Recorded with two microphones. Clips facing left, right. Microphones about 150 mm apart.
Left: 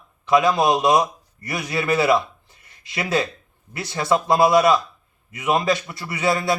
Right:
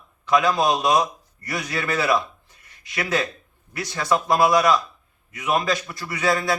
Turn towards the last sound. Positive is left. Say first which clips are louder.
# left 1 dB
turn(degrees=20)  # may be behind; listen again after turning